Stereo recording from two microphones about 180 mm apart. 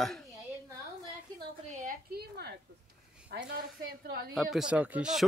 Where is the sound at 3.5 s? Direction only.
60° right (ahead or behind).